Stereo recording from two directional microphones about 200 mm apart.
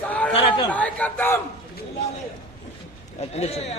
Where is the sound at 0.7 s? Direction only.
5° left (ahead or behind).